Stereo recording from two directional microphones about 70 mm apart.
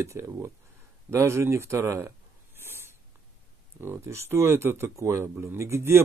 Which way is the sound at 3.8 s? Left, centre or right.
Right.